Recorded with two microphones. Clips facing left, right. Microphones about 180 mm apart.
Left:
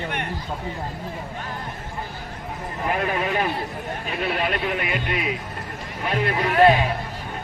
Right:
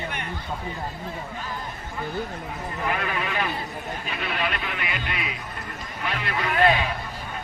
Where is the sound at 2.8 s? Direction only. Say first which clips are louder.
Left 5 dB; 40° left (ahead or behind).